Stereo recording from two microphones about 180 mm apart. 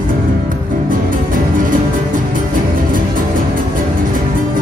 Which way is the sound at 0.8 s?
50° right (ahead or behind).